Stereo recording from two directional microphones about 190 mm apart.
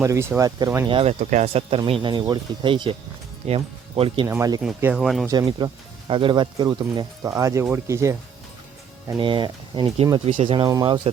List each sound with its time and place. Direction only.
0.0 s speech: 15° right (ahead or behind)
0.9 s speech: 30° right (ahead or behind)
1.8 s speech: 25° right (ahead or behind)
4.3 s speech: 15° right (ahead or behind)
4.6 s speech: 5° right (ahead or behind)
5.2 s speech: 20° right (ahead or behind)
9.0 s speech: 25° right (ahead or behind)